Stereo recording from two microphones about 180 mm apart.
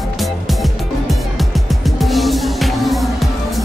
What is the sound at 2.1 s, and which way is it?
Music, centre (ahead or behind).